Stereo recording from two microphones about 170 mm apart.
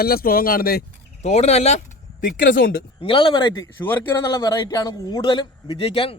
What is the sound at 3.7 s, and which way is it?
A man's voice, 10° left (ahead or behind).